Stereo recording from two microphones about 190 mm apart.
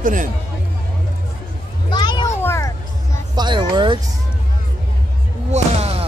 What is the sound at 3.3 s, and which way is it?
Speech, 25° right (ahead or behind).